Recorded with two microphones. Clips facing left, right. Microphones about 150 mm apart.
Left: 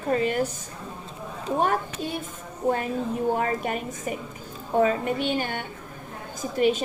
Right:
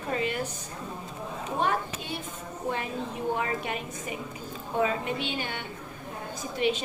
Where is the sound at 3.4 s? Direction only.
45° left (ahead or behind).